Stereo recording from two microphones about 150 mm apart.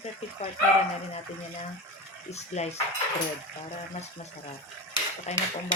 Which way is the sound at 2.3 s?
45° left (ahead or behind).